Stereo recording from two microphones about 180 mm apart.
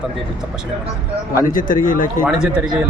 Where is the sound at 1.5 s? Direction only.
50° left (ahead or behind).